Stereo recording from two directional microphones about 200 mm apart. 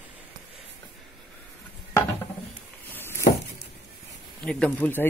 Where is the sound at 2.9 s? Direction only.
10° left (ahead or behind).